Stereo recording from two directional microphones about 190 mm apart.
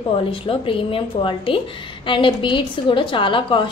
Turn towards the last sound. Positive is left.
turn(degrees=25)  # may be behind; listen again after turning